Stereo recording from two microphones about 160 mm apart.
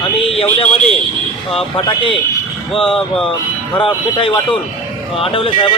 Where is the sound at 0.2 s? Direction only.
35° left (ahead or behind).